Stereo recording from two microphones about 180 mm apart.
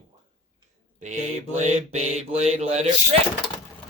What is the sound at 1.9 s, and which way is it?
Speech, 35° right (ahead or behind).